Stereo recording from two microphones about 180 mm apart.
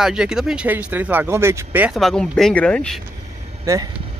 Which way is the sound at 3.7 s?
20° right (ahead or behind).